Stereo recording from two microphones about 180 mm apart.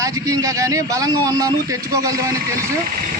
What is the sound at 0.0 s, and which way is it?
Speech, 20° right (ahead or behind).